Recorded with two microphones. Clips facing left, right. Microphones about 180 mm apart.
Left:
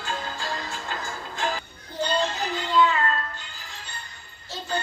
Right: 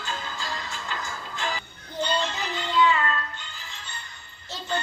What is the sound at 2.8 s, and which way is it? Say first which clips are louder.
Child singing: left 1 dB; 20° right (ahead or behind).